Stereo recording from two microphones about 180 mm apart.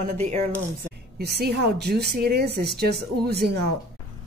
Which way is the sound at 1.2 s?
60° right (ahead or behind).